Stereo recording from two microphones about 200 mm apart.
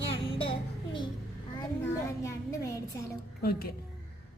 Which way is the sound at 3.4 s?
50° left (ahead or behind).